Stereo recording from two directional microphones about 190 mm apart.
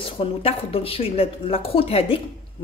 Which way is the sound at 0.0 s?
30° left (ahead or behind).